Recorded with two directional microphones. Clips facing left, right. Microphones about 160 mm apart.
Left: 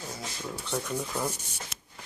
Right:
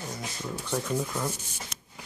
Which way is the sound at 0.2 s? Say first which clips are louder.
Right 2 dB; 10° right (ahead or behind).